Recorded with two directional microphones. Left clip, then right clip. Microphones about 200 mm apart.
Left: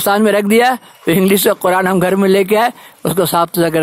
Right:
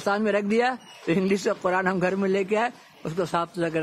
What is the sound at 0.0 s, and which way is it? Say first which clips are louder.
Speech: left 12 dB; 40° left (ahead or behind).